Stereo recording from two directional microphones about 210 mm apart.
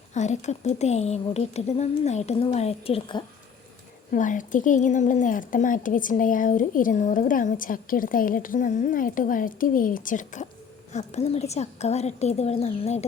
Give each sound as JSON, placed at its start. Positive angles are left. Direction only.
{"t": 0.1, "sound": "a woman's voice", "side_deg": 35}
{"t": 4.1, "sound": "a woman's voice", "side_deg": 35}